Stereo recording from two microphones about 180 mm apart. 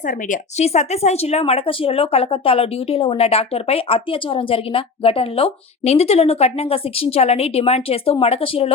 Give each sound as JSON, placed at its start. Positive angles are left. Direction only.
{"t": 0.3, "sound": "speech", "side_deg": 40}